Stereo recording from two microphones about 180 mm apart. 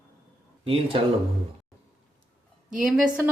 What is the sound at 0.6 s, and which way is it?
Speech, 30° right (ahead or behind).